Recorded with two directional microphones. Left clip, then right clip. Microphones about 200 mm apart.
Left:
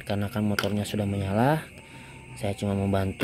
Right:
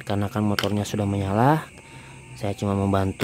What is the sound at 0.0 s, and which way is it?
Speech, 30° right (ahead or behind).